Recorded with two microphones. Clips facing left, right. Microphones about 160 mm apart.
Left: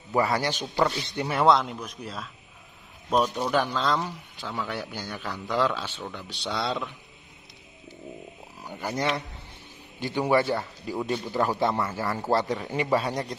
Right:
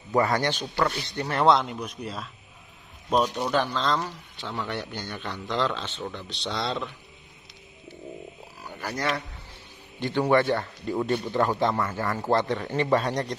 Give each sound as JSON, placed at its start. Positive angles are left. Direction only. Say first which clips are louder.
{"t": 0.1, "sound": "speech", "louder": "right 1 dB", "side_deg": 10}
{"t": 1.3, "sound": "speech", "louder": "even", "side_deg": 0}
{"t": 3.5, "sound": "speech", "louder": "even", "side_deg": 10}
{"t": 8.6, "sound": "speech", "louder": "left 1 dB", "side_deg": 20}
{"t": 9.9, "sound": "speech", "louder": "right 1 dB", "side_deg": 10}